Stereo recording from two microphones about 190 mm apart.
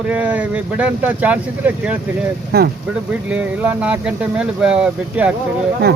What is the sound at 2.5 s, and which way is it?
Speech, 55° right (ahead or behind).